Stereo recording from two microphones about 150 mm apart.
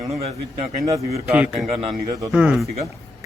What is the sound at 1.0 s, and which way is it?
Speech, 45° right (ahead or behind).